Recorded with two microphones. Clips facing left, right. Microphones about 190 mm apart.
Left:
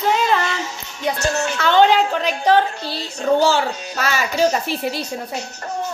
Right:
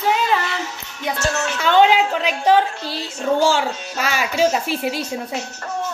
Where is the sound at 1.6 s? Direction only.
10° right (ahead or behind).